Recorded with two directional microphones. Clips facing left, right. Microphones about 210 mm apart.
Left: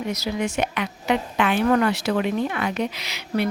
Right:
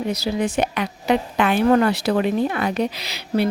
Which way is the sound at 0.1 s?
35° right (ahead or behind).